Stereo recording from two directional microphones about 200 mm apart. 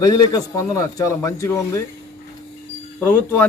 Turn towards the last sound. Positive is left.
turn(degrees=10)  # may be behind; listen again after turning